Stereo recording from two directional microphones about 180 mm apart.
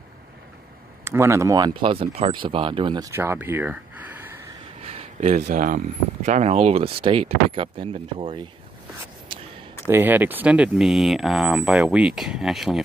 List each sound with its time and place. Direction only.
1.0 s speech: 15° right (ahead or behind)
4.8 s a sound: 40° right (ahead or behind)
5.5 s speech: 50° right (ahead or behind); by 8.5 s 30° right (ahead or behind)
9.8 s speech: 10° right (ahead or behind)